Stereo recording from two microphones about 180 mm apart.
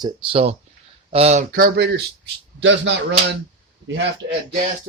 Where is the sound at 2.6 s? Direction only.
85° right.